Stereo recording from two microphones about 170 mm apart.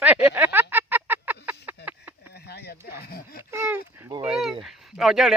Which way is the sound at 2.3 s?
70° left (ahead or behind).